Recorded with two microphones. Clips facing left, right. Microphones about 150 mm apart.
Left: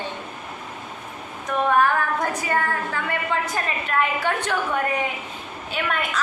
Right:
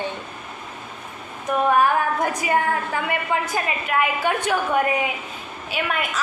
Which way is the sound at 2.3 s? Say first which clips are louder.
Right 3 dB; 15° right (ahead or behind).